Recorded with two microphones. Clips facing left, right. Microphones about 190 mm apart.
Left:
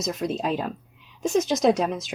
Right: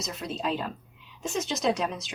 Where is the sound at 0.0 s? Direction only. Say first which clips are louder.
Left 6 dB; 45° left (ahead or behind).